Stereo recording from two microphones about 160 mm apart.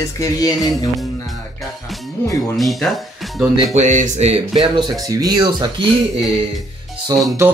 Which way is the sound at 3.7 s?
50° right (ahead or behind).